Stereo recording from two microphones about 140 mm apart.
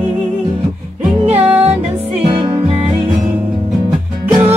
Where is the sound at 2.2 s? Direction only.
35° right (ahead or behind).